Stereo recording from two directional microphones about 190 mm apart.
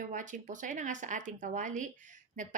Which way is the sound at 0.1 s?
40° right (ahead or behind).